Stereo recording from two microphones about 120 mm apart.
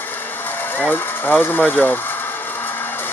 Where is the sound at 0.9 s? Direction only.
15° left (ahead or behind).